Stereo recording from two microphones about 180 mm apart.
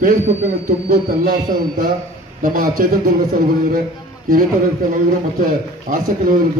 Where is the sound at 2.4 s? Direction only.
50° right (ahead or behind).